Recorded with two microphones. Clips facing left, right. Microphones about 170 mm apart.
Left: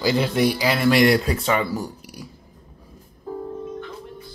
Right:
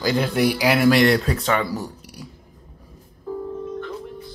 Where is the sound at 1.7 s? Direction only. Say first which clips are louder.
Left 1 dB; 10° left (ahead or behind).